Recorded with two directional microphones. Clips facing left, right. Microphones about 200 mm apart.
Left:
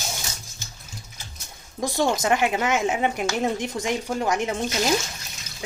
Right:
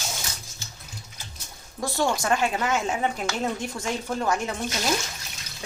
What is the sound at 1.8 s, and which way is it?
A woman's voice, 15° left (ahead or behind).